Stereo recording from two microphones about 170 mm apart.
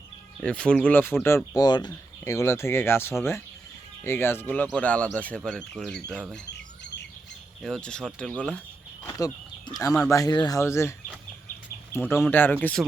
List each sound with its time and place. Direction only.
0.3 s speech: 5° left (ahead or behind)
1.5 s speech: 25° left (ahead or behind); by 6.2 s 5° left (ahead or behind)
7.6 s speech: 5° left (ahead or behind)
9.0 s speech: 20° left (ahead or behind)